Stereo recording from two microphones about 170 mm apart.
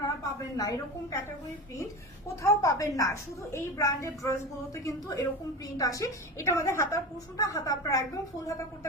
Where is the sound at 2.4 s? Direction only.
20° left (ahead or behind).